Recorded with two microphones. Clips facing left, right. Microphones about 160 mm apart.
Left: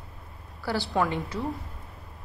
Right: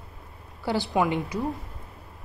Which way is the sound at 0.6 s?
20° right (ahead or behind).